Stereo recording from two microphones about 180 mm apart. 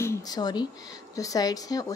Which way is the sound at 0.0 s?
20° left (ahead or behind).